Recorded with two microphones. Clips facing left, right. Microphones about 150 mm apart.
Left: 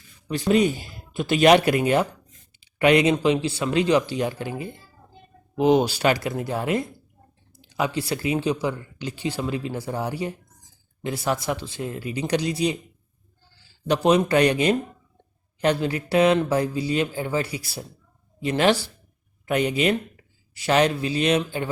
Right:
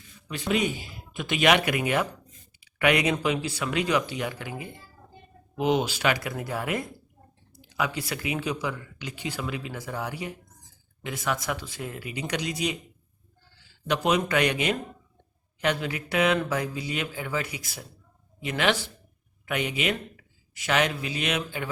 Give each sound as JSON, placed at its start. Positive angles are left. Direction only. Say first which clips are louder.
{"t": 0.3, "sound": "a man's voice", "louder": "left 7 dB", "side_deg": 35}